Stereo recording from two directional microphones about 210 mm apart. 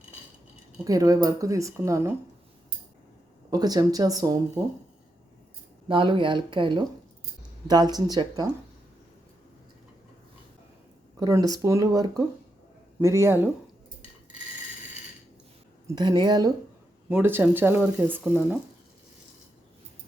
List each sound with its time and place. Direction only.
0.9 s speech: 15° right (ahead or behind)
3.5 s speech: 20° right (ahead or behind)
5.9 s speech: 25° right (ahead or behind)
11.2 s speech: 15° right (ahead or behind)
16.0 s speech: 20° right (ahead or behind)
17.1 s speech: 10° right (ahead or behind)